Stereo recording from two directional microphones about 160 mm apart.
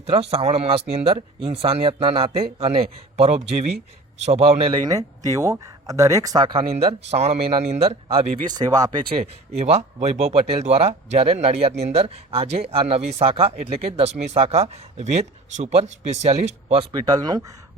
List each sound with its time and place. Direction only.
0.0 s speech: 40° right (ahead or behind)
4.8 s speech: 20° right (ahead or behind); by 8.4 s 40° right (ahead or behind)
8.4 s speech: 25° right (ahead or behind)
16.9 s speech: 25° right (ahead or behind)